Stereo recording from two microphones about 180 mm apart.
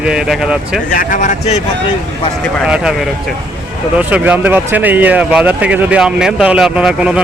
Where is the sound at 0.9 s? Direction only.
45° left (ahead or behind).